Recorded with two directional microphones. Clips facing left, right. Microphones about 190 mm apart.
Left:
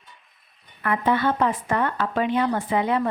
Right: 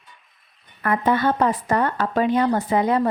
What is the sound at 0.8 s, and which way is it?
Speech, 45° right (ahead or behind).